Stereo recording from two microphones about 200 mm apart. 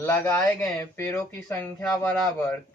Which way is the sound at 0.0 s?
15° left (ahead or behind).